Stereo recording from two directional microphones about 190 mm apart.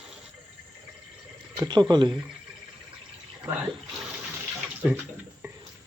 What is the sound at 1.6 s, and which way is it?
Speech, 20° right (ahead or behind).